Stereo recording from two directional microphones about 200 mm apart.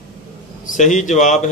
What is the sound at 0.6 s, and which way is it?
Speech, 40° left (ahead or behind).